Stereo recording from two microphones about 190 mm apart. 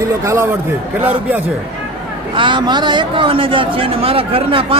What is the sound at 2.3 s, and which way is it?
A man's voice, 25° right (ahead or behind).